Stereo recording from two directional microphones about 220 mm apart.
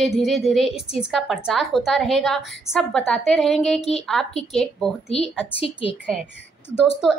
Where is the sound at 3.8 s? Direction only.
30° left (ahead or behind).